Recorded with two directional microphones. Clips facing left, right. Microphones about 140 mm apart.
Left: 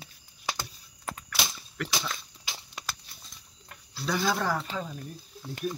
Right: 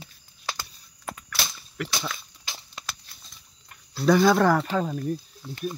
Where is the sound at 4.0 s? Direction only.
55° right (ahead or behind).